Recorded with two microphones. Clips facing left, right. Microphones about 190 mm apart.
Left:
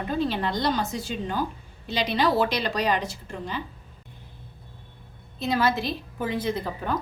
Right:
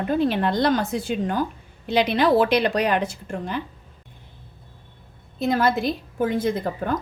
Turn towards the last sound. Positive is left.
turn(degrees=-50)  # may be behind; listen again after turning